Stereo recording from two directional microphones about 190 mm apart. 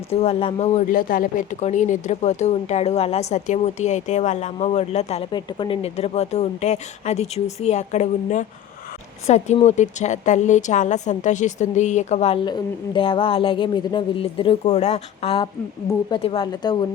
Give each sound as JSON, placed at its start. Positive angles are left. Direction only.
{"t": 0.1, "sound": "speech", "side_deg": 30}